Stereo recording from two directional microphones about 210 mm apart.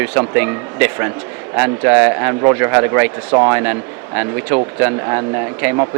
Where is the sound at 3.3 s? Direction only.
25° right (ahead or behind).